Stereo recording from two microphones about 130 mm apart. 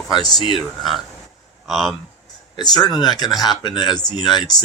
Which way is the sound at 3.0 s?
30° left (ahead or behind).